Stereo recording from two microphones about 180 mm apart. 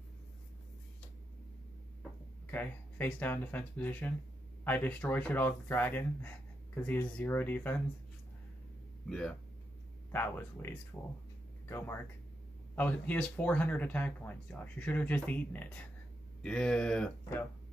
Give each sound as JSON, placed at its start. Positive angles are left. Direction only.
{"t": 2.5, "sound": "speech", "side_deg": 10}
{"t": 9.1, "sound": "speech", "side_deg": 5}
{"t": 12.7, "sound": "speech", "side_deg": 10}